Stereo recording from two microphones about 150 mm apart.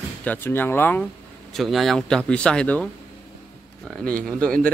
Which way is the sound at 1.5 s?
Centre (ahead or behind).